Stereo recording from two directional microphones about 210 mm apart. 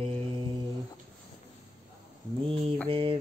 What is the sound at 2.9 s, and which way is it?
Mantra, 25° right (ahead or behind).